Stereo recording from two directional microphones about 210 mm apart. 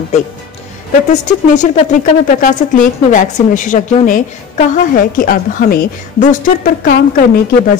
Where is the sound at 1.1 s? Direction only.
35° left (ahead or behind).